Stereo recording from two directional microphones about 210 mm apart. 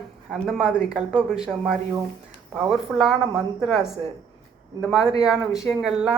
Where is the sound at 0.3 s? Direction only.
Centre (ahead or behind).